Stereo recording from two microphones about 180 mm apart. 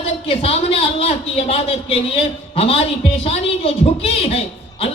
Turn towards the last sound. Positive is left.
turn(degrees=35)  # may be behind; listen again after turning